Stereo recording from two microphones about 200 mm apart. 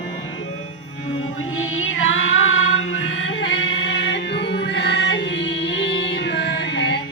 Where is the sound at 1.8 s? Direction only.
80° left.